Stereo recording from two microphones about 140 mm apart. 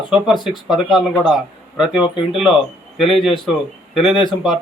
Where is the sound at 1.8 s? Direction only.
5° right (ahead or behind).